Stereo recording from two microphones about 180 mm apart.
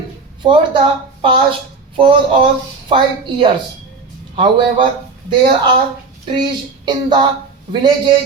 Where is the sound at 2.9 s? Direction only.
30° right (ahead or behind).